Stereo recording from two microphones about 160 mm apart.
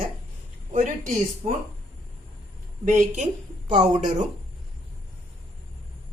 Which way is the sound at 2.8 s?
55° right (ahead or behind).